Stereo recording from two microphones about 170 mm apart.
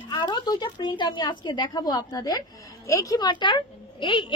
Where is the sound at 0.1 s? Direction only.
25° left (ahead or behind).